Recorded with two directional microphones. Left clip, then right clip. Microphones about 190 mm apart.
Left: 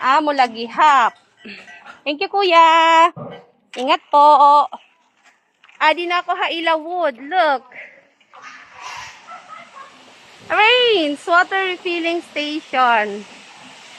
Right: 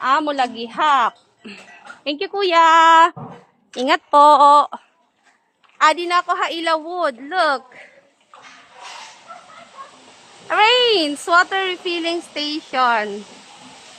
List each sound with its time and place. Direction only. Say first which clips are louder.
0.0 s speech: left 3 dB; 5° left (ahead or behind)
1.4 s a sound: left 2 dB; 15° right (ahead or behind)
2.0 s a woman's voice: left 3 dB; 5° right (ahead or behind)
3.8 s speech: even; 25° right (ahead or behind)
5.8 s a woman's voice: right 1 dB; 5° left (ahead or behind)
10.5 s speech: left 1 dB; 10° left (ahead or behind)